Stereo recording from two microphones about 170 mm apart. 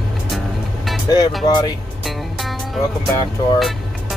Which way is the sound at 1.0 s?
20° left (ahead or behind).